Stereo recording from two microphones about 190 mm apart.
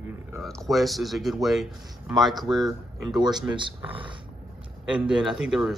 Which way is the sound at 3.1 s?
20° right (ahead or behind).